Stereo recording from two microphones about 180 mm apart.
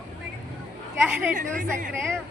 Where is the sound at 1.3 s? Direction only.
45° right (ahead or behind).